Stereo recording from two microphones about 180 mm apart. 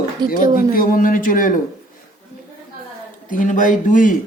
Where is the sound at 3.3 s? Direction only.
45° left (ahead or behind).